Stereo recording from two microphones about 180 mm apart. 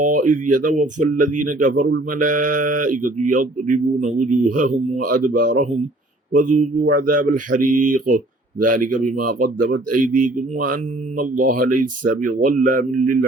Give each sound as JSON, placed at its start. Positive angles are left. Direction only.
{"t": 0.0, "sound": "speech", "side_deg": -45}